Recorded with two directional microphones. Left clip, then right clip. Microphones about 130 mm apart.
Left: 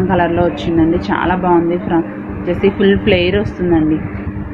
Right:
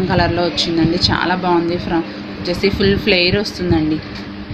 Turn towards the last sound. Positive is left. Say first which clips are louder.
# left 2 dB
turn(degrees=-20)  # may be behind; listen again after turning